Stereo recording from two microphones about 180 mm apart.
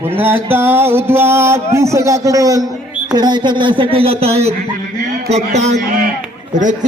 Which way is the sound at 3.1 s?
25° right (ahead or behind).